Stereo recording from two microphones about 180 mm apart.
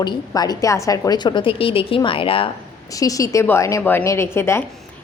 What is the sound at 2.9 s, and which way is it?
A woman's voice, 20° left (ahead or behind).